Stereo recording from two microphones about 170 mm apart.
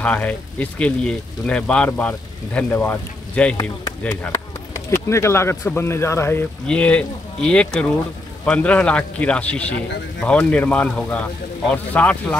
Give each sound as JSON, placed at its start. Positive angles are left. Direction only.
{"t": 0.0, "sound": "speech", "side_deg": 10}